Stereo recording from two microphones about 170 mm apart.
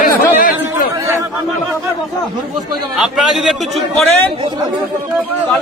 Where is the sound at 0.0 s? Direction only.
55° left (ahead or behind).